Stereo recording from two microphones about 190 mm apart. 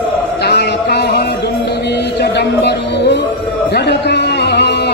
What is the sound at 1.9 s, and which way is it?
Music, 60° left (ahead or behind).